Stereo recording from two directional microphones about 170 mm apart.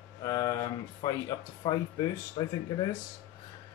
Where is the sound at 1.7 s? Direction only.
20° left (ahead or behind).